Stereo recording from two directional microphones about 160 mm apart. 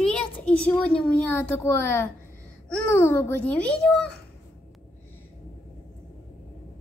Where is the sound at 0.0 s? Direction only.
5° left (ahead or behind).